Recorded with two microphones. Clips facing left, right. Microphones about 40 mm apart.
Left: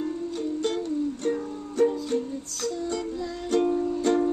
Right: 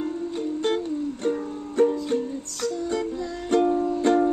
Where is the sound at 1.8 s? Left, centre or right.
Right.